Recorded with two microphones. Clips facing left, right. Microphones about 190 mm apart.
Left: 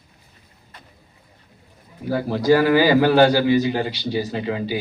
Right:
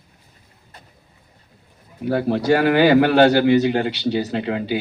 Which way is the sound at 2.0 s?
65° right (ahead or behind).